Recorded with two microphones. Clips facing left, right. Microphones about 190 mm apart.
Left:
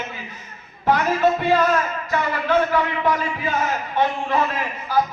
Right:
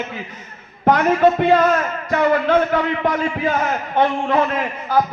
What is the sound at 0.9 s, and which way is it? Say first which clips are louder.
A man's voice: right 4 dB; 60° right (ahead or behind).